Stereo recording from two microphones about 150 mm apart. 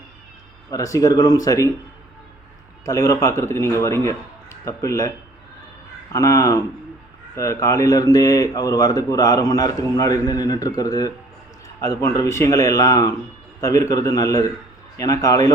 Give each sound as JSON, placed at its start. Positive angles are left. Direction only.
{"t": 0.7, "sound": "speech", "side_deg": 20}
{"t": 2.8, "sound": "speech", "side_deg": 20}
{"t": 6.1, "sound": "speech", "side_deg": 20}